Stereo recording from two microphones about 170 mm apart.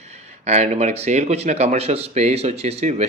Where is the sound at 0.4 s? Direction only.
40° right (ahead or behind).